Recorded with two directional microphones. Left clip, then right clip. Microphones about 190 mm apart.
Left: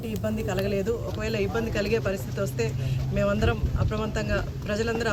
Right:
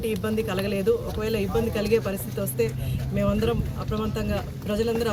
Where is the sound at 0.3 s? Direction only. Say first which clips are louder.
Left 3 dB; 10° right (ahead or behind).